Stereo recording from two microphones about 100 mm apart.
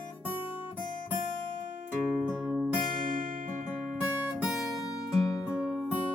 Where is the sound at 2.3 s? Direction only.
10° right (ahead or behind).